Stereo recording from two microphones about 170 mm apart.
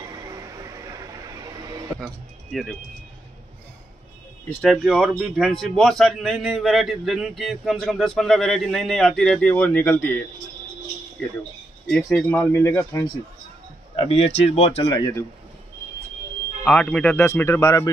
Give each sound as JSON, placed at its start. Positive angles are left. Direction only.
{"t": 0.0, "sound": "a sound", "side_deg": -20}
{"t": 4.5, "sound": "speech", "side_deg": 5}
{"t": 12.0, "sound": "a man's voice", "side_deg": 15}
{"t": 13.9, "sound": "speech", "side_deg": 35}
{"t": 15.0, "sound": "a man's voice", "side_deg": 15}
{"t": 16.6, "sound": "a man's voice", "side_deg": 5}